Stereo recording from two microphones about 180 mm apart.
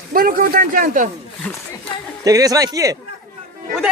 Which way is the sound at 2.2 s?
20° right (ahead or behind).